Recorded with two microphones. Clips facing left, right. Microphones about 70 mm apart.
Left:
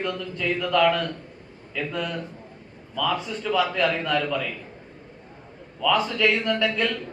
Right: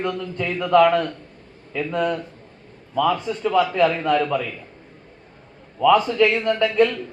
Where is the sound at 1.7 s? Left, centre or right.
Right.